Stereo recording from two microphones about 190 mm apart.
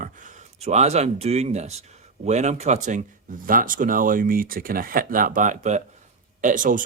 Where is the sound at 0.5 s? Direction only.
35° right (ahead or behind).